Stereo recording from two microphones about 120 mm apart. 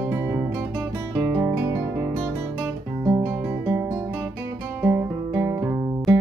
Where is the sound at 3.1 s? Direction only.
20° right (ahead or behind).